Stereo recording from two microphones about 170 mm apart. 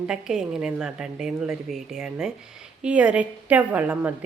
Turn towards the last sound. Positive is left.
turn(degrees=-10)  # may be behind; listen again after turning